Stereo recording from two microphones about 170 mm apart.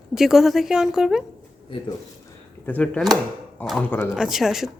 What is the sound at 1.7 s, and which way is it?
Speech, 30° left (ahead or behind).